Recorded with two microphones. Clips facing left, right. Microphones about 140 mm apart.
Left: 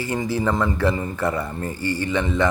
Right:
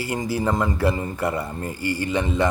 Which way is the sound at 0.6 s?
30° right (ahead or behind).